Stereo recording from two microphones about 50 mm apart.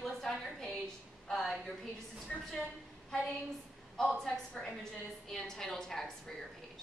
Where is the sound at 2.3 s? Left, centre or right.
Centre.